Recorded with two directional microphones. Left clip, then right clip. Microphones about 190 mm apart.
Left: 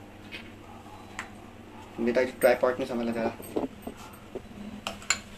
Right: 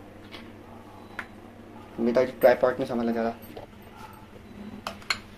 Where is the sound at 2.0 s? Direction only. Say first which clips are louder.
Right 3 dB; 5° right (ahead or behind).